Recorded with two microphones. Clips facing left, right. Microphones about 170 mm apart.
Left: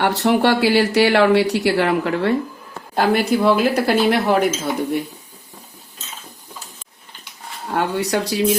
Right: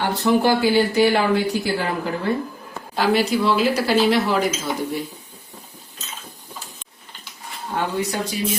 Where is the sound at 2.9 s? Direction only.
50° left (ahead or behind).